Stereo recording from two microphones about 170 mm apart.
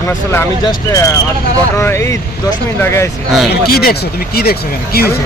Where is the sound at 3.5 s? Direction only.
65° left (ahead or behind).